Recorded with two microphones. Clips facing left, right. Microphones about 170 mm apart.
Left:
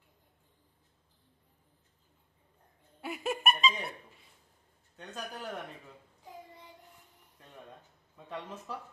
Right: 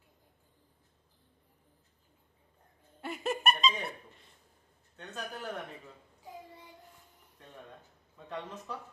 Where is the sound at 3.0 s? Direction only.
Centre (ahead or behind).